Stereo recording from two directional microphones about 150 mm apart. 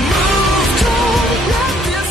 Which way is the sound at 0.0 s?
Centre (ahead or behind).